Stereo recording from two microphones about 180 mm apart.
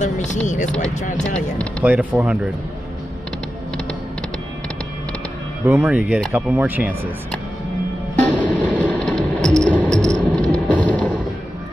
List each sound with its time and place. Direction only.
0.0 s speech: 45° left (ahead or behind)
1.1 s speech: 5° left (ahead or behind)
1.9 s speech: 5° right (ahead or behind)
5.7 s speech: 10° right (ahead or behind)
8.2 s music: 10° left (ahead or behind)